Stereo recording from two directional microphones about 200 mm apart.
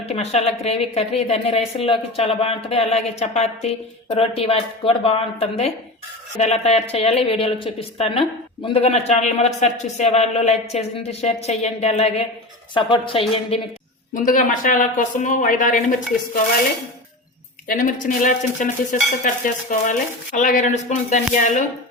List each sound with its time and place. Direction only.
0.0 s a woman's voice: 30° left (ahead or behind)
14.2 s a woman's voice: 40° left (ahead or behind)
17.7 s a woman's voice: 40° left (ahead or behind)